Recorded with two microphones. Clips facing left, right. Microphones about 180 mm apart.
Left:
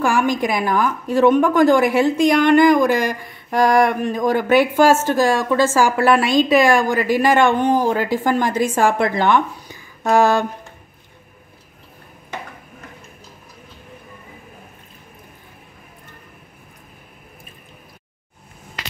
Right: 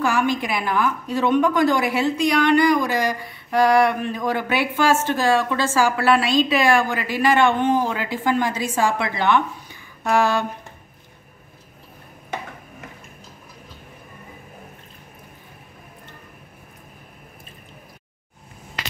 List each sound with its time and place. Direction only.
0.0 s a woman's voice: 45° left (ahead or behind)